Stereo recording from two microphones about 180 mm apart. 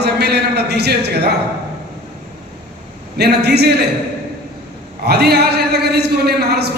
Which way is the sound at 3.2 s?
65° right (ahead or behind).